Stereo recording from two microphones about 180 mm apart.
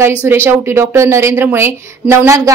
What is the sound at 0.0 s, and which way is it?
A woman's voice, 10° right (ahead or behind).